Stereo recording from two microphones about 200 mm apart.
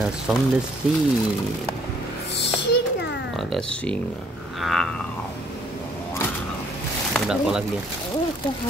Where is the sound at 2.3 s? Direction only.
60° left (ahead or behind).